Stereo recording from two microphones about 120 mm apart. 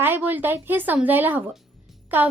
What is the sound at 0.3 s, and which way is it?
A woman's voice, 15° right (ahead or behind).